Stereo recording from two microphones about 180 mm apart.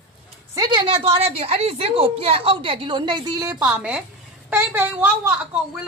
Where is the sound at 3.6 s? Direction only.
5° right (ahead or behind).